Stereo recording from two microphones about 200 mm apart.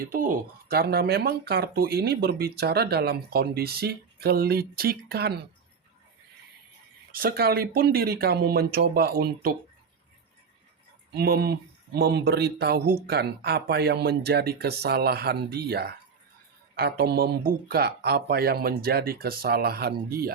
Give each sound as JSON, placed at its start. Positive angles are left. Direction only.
{"t": 0.0, "sound": "speech", "side_deg": -45}
{"t": 7.1, "sound": "speech", "side_deg": -45}
{"t": 11.1, "sound": "speech", "side_deg": -50}